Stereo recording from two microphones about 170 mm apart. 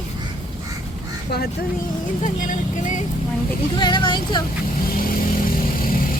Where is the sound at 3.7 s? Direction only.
30° left (ahead or behind).